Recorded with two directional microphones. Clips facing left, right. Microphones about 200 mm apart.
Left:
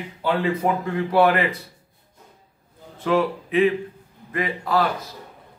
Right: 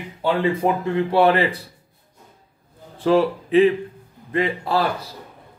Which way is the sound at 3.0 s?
30° right (ahead or behind).